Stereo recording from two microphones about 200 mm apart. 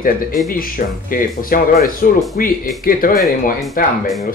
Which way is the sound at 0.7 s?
45° left (ahead or behind).